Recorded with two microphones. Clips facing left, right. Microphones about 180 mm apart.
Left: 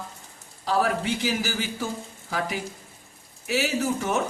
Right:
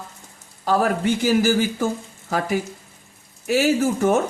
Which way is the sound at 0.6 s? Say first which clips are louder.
Right 4 dB; 50° right (ahead or behind).